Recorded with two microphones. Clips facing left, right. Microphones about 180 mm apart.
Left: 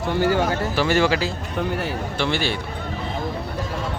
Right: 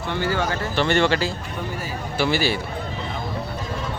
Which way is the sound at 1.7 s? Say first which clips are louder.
Left 5 dB; 65° left (ahead or behind).